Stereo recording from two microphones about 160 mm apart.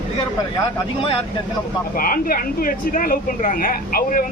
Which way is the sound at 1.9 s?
65° left (ahead or behind).